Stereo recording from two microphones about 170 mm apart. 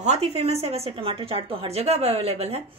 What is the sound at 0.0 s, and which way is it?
A woman's voice, 40° right (ahead or behind).